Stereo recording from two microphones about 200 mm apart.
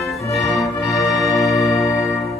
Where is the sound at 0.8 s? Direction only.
15° left (ahead or behind).